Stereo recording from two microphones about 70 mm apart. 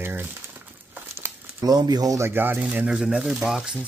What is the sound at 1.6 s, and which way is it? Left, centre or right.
Speech, right.